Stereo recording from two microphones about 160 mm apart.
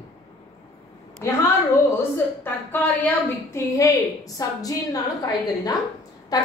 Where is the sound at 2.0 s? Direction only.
10° left (ahead or behind).